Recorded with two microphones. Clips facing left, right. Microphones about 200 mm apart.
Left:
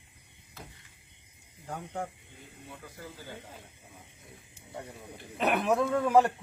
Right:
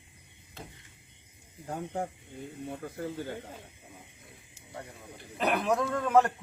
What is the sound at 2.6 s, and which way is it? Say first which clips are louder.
Speech: right 9 dB; 55° right (ahead or behind).